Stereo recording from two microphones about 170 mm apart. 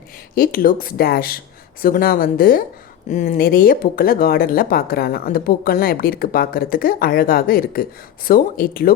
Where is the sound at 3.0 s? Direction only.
45° left (ahead or behind).